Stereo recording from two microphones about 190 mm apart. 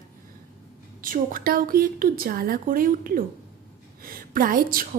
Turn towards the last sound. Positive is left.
turn(degrees=-50)  # may be behind; listen again after turning